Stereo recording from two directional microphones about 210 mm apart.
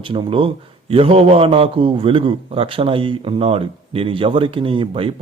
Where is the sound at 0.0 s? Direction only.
25° right (ahead or behind).